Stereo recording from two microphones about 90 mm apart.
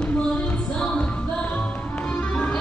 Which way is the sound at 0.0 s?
15° left (ahead or behind).